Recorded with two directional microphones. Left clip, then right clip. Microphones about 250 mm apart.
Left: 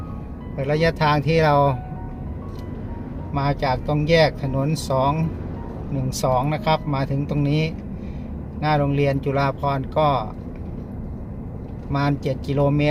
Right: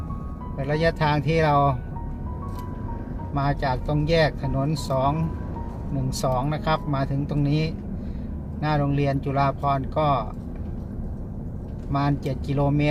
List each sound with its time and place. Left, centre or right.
0.5 s speech: centre
3.3 s speech: centre
6.1 s speech: centre
11.9 s speech: centre